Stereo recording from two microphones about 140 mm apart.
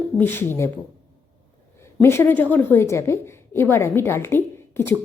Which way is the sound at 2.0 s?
15° left (ahead or behind).